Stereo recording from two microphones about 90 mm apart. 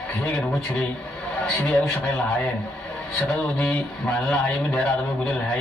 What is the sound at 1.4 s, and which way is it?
Speech, 10° left (ahead or behind).